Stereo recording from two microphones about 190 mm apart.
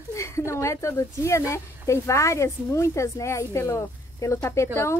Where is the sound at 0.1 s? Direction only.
15° left (ahead or behind).